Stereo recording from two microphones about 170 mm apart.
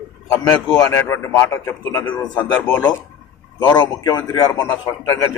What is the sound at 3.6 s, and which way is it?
A man's voice, 25° left (ahead or behind).